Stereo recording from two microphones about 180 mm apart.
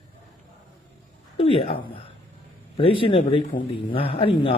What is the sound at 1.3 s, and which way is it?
A man's voice, 30° left (ahead or behind).